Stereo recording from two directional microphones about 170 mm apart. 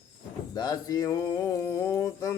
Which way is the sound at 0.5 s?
25° left (ahead or behind).